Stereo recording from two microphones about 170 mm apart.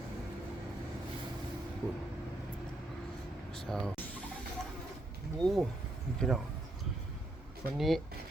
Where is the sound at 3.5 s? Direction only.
5° left (ahead or behind).